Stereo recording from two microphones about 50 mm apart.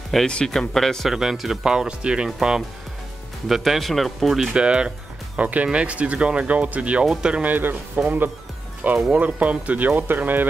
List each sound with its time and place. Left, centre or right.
0.3 s speech: centre
1.1 s speech: centre
4.6 s speech: centre
7.4 s speech: right